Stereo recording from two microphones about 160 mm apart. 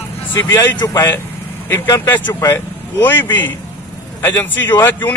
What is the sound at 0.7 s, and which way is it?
Speech, 25° left (ahead or behind).